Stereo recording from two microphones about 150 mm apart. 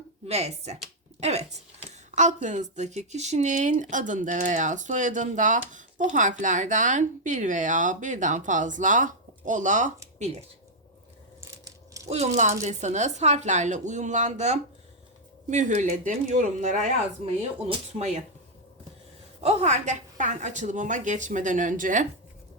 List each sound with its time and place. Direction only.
0.3 s speech: 45° right (ahead or behind)
10.2 s speech: 45° right (ahead or behind)
11.3 s coin: 20° right (ahead or behind)
12.0 s speech: 45° right (ahead or behind)
19.4 s speech: 45° right (ahead or behind)